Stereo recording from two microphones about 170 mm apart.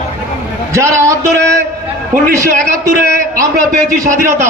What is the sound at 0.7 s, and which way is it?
Speech, 15° right (ahead or behind).